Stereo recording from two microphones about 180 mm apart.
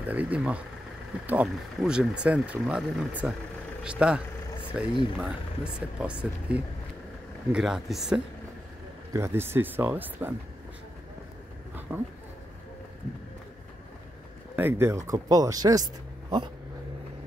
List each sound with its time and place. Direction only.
0.1 s speech: 10° right (ahead or behind)
9.1 s speech: 15° right (ahead or behind)
11.9 s speech: 10° right (ahead or behind)
14.5 s speech: 10° right (ahead or behind)